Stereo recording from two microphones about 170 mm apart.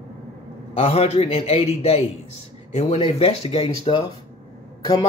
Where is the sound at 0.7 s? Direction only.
35° left (ahead or behind).